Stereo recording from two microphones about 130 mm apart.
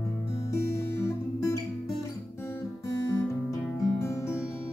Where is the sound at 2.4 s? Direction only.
20° left (ahead or behind).